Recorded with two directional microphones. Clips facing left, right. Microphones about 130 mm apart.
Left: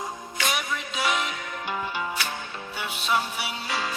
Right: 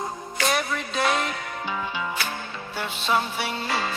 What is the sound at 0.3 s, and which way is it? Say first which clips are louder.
Music: right 4 dB; 50° right (ahead or behind).